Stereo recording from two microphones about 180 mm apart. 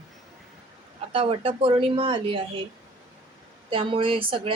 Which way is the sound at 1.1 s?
30° right (ahead or behind).